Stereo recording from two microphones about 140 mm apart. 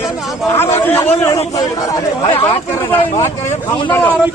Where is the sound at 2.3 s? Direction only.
40° left (ahead or behind).